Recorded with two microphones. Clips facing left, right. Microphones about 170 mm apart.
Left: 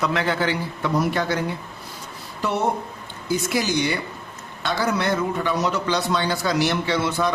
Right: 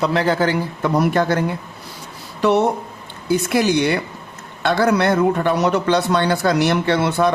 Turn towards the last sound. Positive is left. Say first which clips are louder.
# right 5 dB
turn(degrees=-60)  # may be behind; listen again after turning